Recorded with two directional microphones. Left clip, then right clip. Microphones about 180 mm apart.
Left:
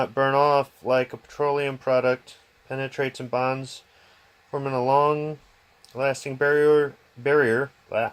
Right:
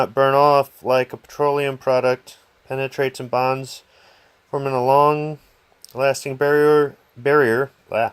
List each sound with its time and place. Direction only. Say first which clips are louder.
0.0 s speech: right 5 dB; 50° right (ahead or behind)